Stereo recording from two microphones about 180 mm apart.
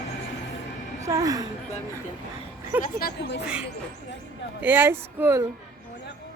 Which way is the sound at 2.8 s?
60° left (ahead or behind).